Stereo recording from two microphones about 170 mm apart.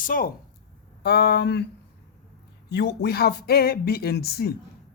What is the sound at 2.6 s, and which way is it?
Speech, 75° left (ahead or behind).